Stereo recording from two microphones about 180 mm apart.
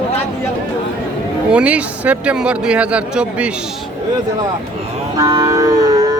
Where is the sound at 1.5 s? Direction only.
5° right (ahead or behind).